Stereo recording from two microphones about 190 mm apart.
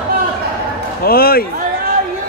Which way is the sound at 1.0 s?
50° left (ahead or behind).